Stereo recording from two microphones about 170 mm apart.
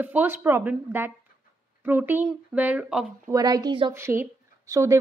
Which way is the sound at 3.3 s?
20° right (ahead or behind).